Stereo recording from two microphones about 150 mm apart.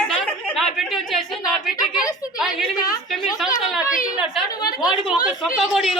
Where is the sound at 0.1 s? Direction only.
5° left (ahead or behind).